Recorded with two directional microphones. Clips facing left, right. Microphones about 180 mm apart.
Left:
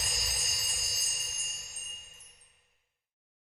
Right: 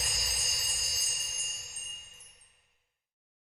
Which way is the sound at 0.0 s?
Centre (ahead or behind).